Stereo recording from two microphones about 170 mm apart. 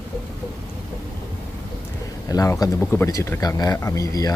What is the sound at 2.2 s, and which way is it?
Speech, 20° left (ahead or behind).